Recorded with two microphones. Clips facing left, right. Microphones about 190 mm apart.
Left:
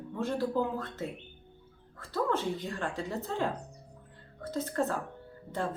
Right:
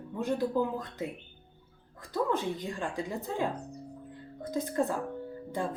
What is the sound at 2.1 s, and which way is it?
Speech, 15° right (ahead or behind).